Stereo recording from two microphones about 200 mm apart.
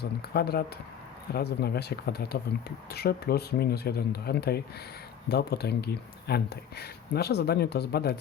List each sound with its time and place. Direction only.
0.2 s speech: 50° left (ahead or behind)